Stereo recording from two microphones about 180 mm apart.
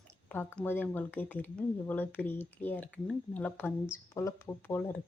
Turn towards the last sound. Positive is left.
turn(degrees=10)  # may be behind; listen again after turning